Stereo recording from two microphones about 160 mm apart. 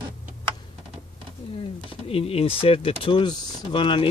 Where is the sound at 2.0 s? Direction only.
35° left (ahead or behind).